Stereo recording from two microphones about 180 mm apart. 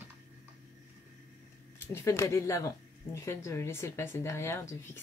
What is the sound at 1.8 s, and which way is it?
Speech, 15° left (ahead or behind).